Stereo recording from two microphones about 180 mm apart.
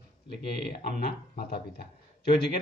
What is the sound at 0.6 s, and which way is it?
Speech, 60° left (ahead or behind).